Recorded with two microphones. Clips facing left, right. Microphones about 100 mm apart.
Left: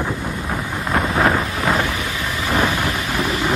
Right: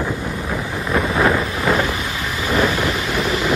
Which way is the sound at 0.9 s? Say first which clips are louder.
Right 1 dB; 25° left (ahead or behind).